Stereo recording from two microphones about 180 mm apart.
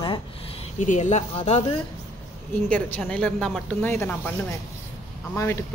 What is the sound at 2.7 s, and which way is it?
Speech, 10° left (ahead or behind).